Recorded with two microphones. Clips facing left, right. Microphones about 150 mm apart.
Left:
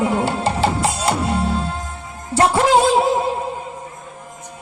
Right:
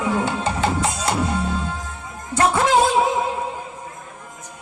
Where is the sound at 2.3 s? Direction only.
30° left (ahead or behind).